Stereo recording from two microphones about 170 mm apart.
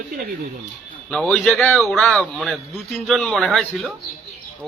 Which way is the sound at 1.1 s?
5° left (ahead or behind).